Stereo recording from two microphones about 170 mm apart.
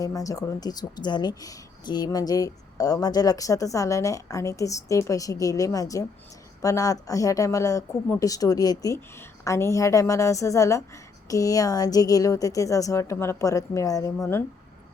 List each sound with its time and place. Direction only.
0.0 s a woman's voice: 20° left (ahead or behind)